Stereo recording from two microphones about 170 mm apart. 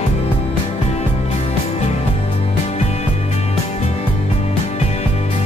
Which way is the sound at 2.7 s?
40° left (ahead or behind).